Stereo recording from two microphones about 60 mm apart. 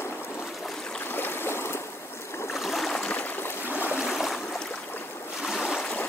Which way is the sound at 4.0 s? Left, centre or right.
Centre.